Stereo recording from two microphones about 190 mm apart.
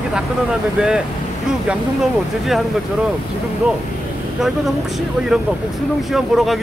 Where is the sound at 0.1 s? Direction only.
5° right (ahead or behind).